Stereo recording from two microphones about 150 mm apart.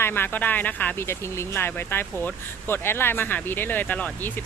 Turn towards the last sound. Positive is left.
turn(degrees=10)  # may be behind; listen again after turning